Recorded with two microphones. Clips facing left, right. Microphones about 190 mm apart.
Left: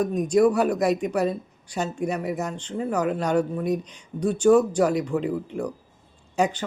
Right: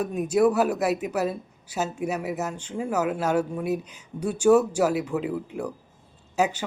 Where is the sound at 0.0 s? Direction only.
5° right (ahead or behind).